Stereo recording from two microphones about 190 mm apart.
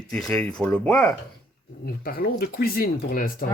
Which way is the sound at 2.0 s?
50° left (ahead or behind).